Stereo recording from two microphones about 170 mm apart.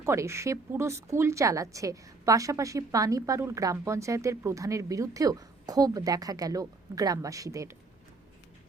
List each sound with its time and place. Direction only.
0.0 s a woman's voice: 15° right (ahead or behind)